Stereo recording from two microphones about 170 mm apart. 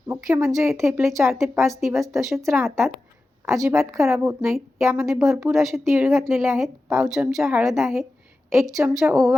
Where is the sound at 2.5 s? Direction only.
15° right (ahead or behind).